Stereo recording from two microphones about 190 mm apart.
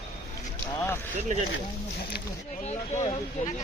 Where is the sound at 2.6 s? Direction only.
35° left (ahead or behind).